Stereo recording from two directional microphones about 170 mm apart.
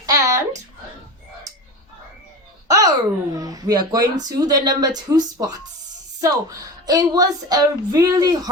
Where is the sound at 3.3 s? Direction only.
20° right (ahead or behind).